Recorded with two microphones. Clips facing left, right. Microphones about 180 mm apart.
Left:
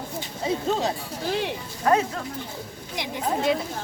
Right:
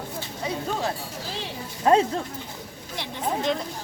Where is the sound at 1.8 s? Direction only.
25° right (ahead or behind).